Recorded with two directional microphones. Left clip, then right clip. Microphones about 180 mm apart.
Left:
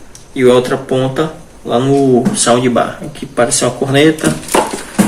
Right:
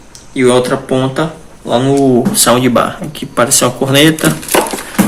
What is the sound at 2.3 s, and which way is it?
Speech, 65° right (ahead or behind).